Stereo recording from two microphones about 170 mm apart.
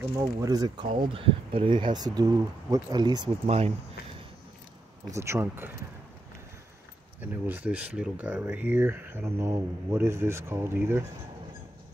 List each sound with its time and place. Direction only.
0.1 s speech: 20° right (ahead or behind)
3.4 s speech: 35° right (ahead or behind)
5.1 s speech: 15° right (ahead or behind)
7.2 s speech: 10° right (ahead or behind)